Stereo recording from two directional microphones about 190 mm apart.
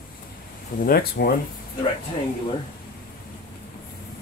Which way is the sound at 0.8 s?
50° left (ahead or behind).